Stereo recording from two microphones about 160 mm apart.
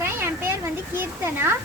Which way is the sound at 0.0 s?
15° right (ahead or behind).